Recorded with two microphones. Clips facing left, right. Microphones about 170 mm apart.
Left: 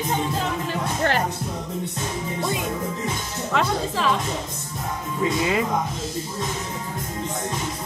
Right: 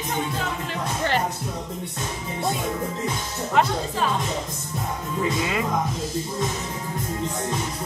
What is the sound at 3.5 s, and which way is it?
Speech, 90° left.